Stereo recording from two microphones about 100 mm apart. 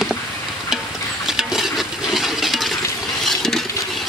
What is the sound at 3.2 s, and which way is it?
Vehicle, centre (ahead or behind).